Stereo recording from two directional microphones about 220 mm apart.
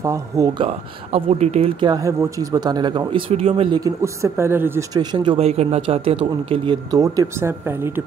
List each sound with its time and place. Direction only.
0.0 s speech: 15° right (ahead or behind)
0.7 s speech: 30° right (ahead or behind)
3.8 s speech: 15° right (ahead or behind)